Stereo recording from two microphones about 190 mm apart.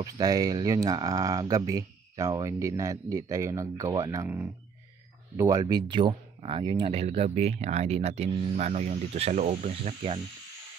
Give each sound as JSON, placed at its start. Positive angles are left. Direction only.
{"t": 0.0, "sound": "speech", "side_deg": -20}